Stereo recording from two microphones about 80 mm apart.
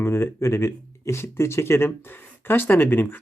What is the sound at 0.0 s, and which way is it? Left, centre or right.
Speech, left.